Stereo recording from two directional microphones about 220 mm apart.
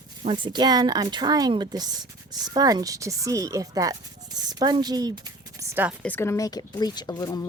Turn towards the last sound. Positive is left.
turn(degrees=15)  # may be behind; listen again after turning